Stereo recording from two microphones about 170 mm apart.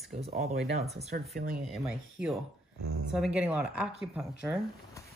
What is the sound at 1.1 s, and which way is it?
Speech, 60° right (ahead or behind).